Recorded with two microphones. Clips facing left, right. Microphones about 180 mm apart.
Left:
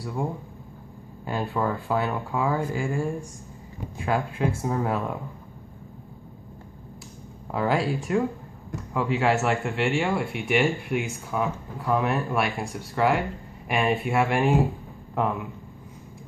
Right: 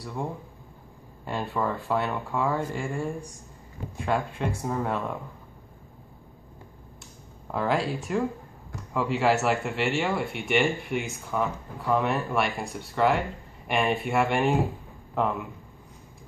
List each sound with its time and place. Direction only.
0.0 s speech: 5° left (ahead or behind)
7.5 s speech: centre (ahead or behind)